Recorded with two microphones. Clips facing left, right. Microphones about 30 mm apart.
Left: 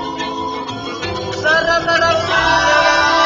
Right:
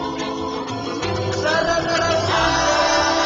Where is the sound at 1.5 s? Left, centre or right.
Left.